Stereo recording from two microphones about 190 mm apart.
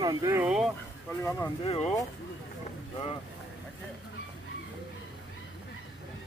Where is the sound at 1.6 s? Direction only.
30° left (ahead or behind).